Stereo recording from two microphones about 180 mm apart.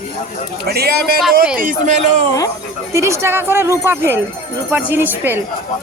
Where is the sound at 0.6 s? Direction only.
60° right (ahead or behind).